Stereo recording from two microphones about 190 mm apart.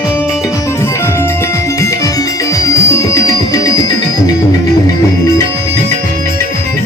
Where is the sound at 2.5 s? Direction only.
15° left (ahead or behind).